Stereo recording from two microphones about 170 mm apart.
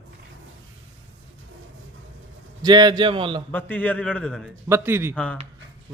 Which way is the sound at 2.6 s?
25° right (ahead or behind).